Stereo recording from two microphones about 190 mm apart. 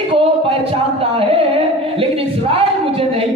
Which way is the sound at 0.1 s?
30° right (ahead or behind).